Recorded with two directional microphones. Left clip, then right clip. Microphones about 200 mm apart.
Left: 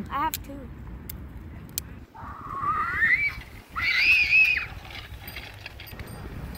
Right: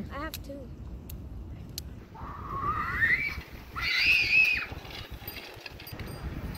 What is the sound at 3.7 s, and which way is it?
Pig, 10° right (ahead or behind).